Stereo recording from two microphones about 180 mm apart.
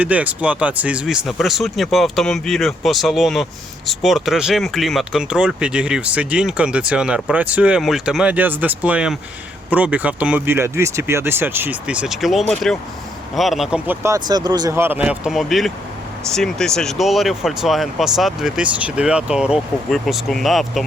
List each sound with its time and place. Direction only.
0.0 s speech: 10° right (ahead or behind)